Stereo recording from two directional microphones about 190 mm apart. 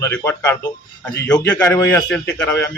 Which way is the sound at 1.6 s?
10° left (ahead or behind).